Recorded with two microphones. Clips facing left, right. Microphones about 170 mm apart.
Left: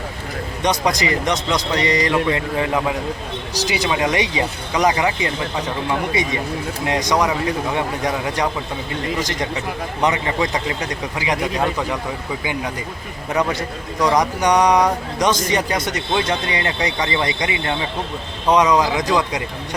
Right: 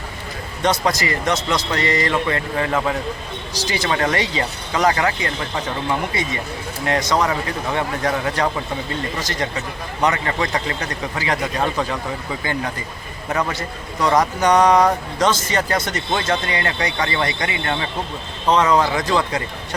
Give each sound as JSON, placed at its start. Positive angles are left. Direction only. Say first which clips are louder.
{"t": 0.6, "sound": "speech", "louder": "even", "side_deg": 15}
{"t": 8.4, "sound": "speech", "louder": "right 1 dB", "side_deg": 15}
{"t": 13.3, "sound": "speech", "louder": "left 2 dB", "side_deg": 15}